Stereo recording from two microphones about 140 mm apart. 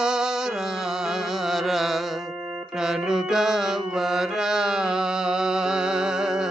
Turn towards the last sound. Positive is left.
turn(degrees=-5)  # may be behind; listen again after turning